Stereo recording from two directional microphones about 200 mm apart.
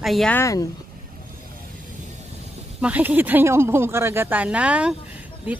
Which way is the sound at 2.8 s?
5° right (ahead or behind).